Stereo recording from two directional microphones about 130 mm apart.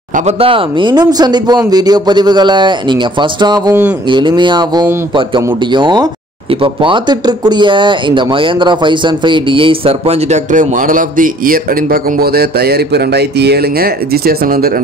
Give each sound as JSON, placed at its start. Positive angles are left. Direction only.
{"t": 0.1, "sound": "speech", "side_deg": -55}